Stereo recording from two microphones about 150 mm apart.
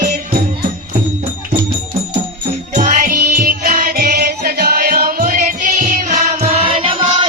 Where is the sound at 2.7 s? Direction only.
60° right (ahead or behind).